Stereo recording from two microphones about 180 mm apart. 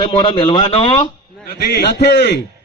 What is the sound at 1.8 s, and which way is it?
Speech, 65° left (ahead or behind).